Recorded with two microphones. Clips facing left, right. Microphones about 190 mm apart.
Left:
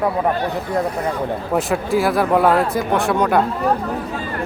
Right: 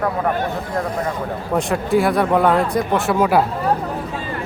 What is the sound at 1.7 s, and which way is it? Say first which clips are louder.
Speech: right 2 dB; centre (ahead or behind).